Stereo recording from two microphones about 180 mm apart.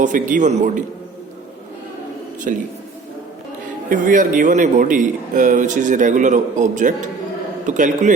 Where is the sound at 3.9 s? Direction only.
45° right (ahead or behind).